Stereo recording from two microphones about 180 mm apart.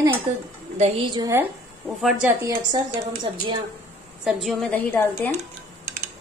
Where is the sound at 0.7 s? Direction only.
35° right (ahead or behind).